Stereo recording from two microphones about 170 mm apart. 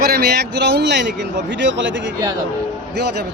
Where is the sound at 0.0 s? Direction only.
70° right (ahead or behind); by 2.0 s 90° right.